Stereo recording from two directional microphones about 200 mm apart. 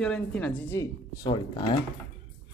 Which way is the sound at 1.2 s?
20° left (ahead or behind).